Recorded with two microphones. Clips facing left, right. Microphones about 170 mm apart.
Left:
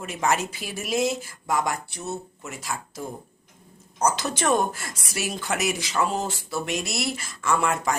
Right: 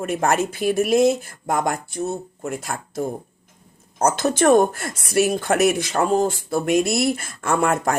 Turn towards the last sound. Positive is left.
turn(degrees=-55)  # may be behind; listen again after turning